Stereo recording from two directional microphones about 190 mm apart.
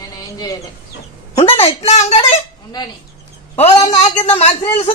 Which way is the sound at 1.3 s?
30° left (ahead or behind).